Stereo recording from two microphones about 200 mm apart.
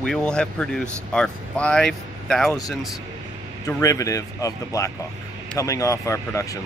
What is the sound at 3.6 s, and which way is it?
Speech, 15° left (ahead or behind).